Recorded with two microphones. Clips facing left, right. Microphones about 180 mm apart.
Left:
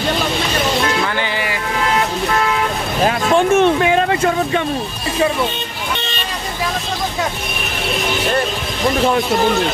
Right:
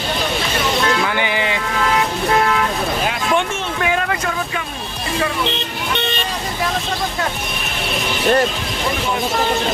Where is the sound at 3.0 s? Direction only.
35° left (ahead or behind).